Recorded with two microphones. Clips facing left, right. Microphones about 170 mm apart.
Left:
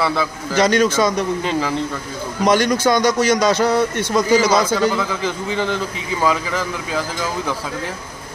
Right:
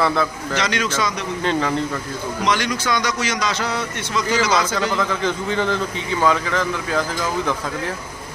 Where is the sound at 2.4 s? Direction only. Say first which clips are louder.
Left 7 dB; 45° left (ahead or behind).